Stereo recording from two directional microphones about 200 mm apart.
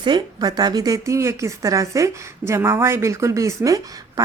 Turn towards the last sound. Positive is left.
turn(degrees=-15)  # may be behind; listen again after turning